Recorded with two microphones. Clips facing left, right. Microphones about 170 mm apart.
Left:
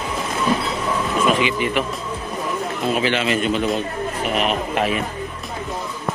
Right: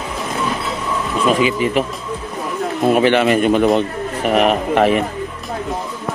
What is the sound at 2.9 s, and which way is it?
A man's voice, 55° right (ahead or behind).